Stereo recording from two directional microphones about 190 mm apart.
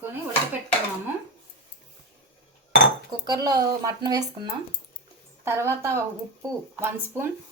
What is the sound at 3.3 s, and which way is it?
A woman's voice, 20° right (ahead or behind).